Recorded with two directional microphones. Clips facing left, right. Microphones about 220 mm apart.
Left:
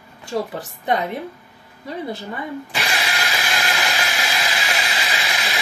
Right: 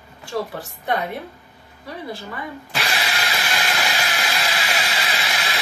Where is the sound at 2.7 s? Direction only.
Centre (ahead or behind).